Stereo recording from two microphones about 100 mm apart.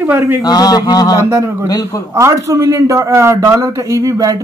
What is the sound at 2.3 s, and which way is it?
A man's voice, 30° right (ahead or behind).